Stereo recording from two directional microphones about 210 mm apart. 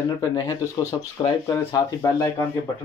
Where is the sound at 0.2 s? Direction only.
15° left (ahead or behind).